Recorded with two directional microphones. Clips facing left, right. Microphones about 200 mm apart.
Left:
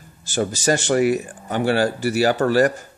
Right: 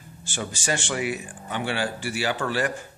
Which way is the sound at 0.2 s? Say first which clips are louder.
Left 10 dB; 40° left (ahead or behind).